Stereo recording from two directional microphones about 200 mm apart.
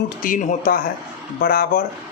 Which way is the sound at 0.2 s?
40° left (ahead or behind).